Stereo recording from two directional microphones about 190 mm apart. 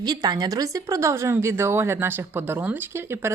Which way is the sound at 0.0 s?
20° right (ahead or behind).